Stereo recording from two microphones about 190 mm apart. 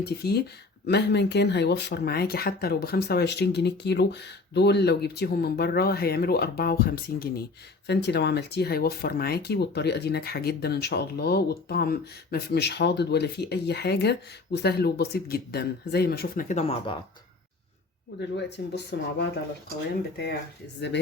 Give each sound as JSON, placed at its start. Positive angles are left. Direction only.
{"t": 0.0, "sound": "speech", "side_deg": 55}
{"t": 18.3, "sound": "speech", "side_deg": 65}